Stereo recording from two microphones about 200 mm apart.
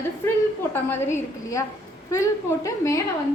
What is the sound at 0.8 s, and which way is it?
A woman's voice, 10° left (ahead or behind).